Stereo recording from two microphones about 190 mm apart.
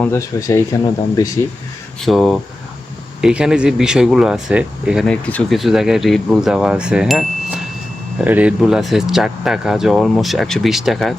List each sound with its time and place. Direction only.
0.0 s speech: 15° left (ahead or behind)
2.0 s speech: centre (ahead or behind)